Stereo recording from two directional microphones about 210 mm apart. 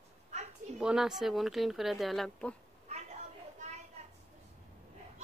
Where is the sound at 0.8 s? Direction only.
5° right (ahead or behind).